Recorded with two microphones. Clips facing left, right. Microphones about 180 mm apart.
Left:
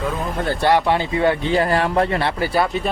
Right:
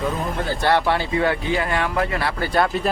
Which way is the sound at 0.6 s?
20° left (ahead or behind).